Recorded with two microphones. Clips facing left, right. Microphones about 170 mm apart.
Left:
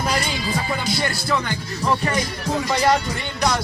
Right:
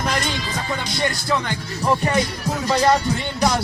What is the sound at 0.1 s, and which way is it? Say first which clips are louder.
Music: left 1 dB; 5° left (ahead or behind).